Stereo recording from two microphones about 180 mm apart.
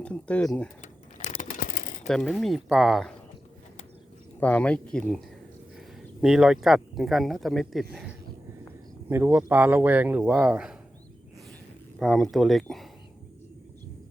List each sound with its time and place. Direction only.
0.0 s speech: 5° left (ahead or behind)
1.3 s a sound: 45° left (ahead or behind)
2.0 s speech: centre (ahead or behind)
4.4 s speech: 5° left (ahead or behind)
6.2 s speech: 5° right (ahead or behind)
9.0 s speech: 10° right (ahead or behind)
11.9 s speech: centre (ahead or behind)